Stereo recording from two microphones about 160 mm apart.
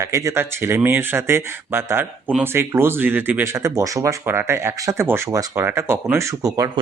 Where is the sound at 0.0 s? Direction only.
20° right (ahead or behind).